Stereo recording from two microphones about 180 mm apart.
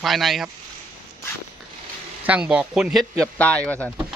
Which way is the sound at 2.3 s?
5° right (ahead or behind).